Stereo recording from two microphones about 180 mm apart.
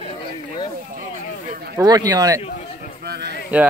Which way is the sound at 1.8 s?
20° right (ahead or behind).